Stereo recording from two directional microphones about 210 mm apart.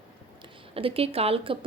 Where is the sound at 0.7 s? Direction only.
25° right (ahead or behind).